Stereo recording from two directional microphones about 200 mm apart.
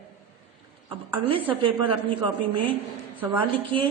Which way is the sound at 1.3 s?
25° right (ahead or behind).